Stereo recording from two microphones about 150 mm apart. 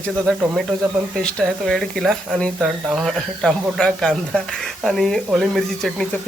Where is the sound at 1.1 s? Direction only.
5° left (ahead or behind).